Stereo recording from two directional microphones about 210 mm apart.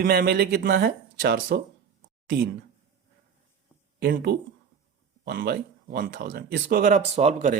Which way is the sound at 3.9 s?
45° right (ahead or behind).